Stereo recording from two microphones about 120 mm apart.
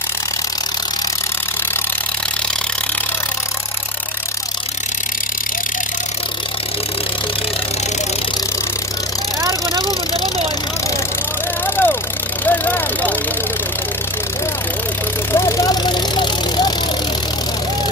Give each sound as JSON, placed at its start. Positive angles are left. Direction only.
{"t": 9.4, "sound": "a sound", "side_deg": -30}
{"t": 11.6, "sound": "vehicle", "side_deg": 20}
{"t": 15.3, "sound": "vehicle", "side_deg": 25}
{"t": 15.8, "sound": "vehicle", "side_deg": 40}